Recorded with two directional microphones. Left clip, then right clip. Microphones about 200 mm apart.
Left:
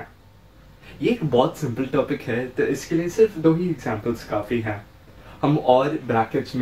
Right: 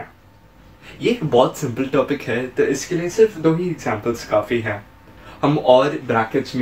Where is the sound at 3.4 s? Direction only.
10° right (ahead or behind).